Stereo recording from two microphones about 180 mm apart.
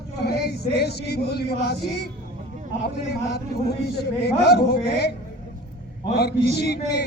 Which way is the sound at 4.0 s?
65° left (ahead or behind).